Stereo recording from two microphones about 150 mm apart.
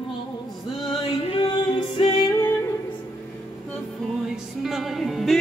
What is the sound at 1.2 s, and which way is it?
Music, 35° left (ahead or behind).